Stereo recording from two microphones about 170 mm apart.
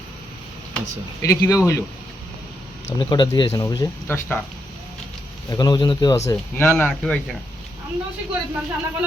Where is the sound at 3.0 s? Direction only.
25° left (ahead or behind).